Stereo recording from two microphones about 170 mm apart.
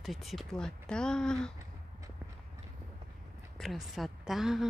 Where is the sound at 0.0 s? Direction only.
Centre (ahead or behind).